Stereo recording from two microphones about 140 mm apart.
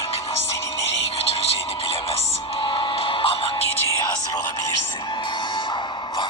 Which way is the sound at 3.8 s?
30° left (ahead or behind).